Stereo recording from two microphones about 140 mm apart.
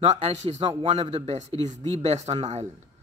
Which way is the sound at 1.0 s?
35° right (ahead or behind).